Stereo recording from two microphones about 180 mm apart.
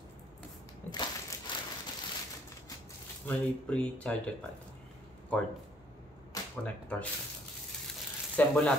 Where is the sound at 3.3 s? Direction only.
5° left (ahead or behind).